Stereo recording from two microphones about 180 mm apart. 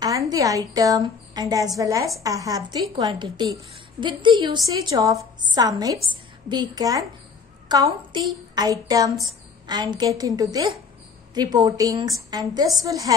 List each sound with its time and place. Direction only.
0.0 s a woman's voice: 20° right (ahead or behind)